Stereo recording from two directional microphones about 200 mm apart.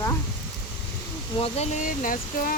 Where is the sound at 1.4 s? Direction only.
35° left (ahead or behind).